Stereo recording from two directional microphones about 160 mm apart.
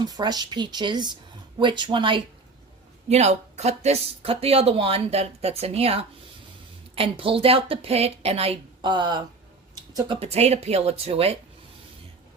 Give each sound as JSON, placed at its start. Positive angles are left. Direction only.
{"t": 0.0, "sound": "speech", "side_deg": -25}
{"t": 3.1, "sound": "speech", "side_deg": -45}
{"t": 10.2, "sound": "speech", "side_deg": -40}